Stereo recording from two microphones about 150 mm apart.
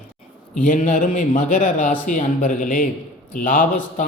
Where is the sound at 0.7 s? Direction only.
60° left (ahead or behind).